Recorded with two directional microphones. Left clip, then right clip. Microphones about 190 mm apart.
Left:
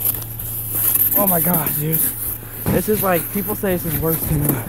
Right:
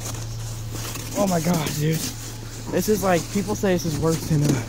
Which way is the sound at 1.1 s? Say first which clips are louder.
Left 2 dB; 5° left (ahead or behind).